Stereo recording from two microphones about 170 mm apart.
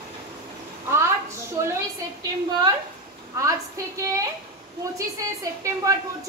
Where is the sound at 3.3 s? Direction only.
20° right (ahead or behind).